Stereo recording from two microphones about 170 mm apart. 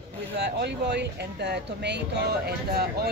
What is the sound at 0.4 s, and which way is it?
Speech, 80° right.